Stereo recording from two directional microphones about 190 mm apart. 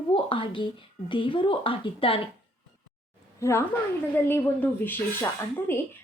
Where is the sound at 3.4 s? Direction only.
15° left (ahead or behind).